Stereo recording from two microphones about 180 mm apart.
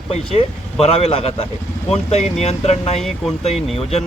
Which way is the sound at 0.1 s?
35° left (ahead or behind).